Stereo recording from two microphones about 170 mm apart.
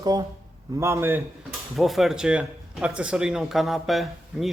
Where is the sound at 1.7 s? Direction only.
Centre (ahead or behind).